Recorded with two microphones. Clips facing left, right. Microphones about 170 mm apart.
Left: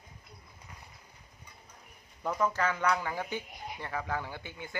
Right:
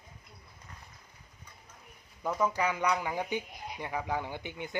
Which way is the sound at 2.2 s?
10° right (ahead or behind).